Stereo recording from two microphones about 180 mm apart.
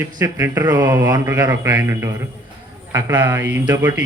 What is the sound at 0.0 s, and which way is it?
Speech, 15° right (ahead or behind).